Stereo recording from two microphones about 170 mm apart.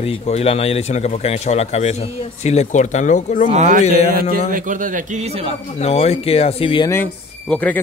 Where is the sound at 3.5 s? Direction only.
45° right (ahead or behind).